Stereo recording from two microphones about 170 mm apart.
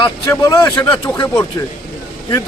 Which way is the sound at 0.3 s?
20° left (ahead or behind).